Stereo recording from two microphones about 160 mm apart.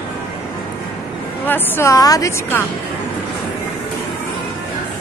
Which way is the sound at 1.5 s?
15° left (ahead or behind).